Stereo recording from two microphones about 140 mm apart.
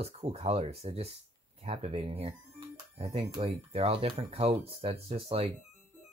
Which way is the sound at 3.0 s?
55° right (ahead or behind).